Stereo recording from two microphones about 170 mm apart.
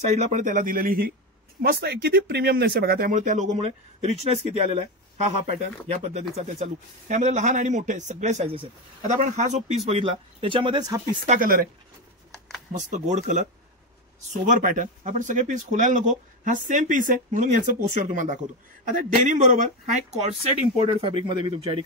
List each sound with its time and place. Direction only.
0.1 s speech: 45° right (ahead or behind); by 11.0 s 25° right (ahead or behind)
11.2 s speech: 50° right (ahead or behind)
12.3 s a sound: centre (ahead or behind)
12.7 s speech: 45° right (ahead or behind)
20.8 s speech: 30° right (ahead or behind)